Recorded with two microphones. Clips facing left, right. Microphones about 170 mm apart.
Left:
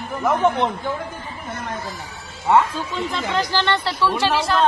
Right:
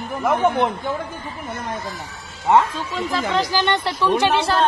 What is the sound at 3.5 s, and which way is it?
Speech, 15° right (ahead or behind).